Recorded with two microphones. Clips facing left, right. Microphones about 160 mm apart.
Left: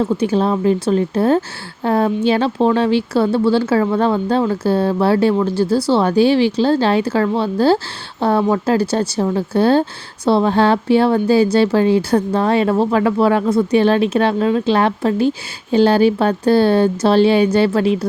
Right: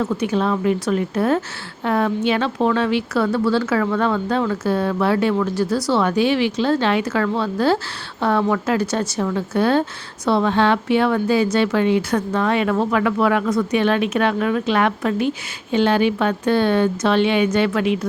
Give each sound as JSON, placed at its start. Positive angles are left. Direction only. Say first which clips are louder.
{"t": 0.0, "sound": "speech", "louder": "left 4 dB", "side_deg": 30}